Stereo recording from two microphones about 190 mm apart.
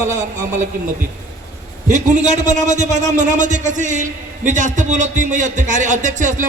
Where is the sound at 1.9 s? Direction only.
40° right (ahead or behind).